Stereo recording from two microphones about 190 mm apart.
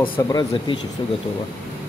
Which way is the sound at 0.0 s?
25° left (ahead or behind).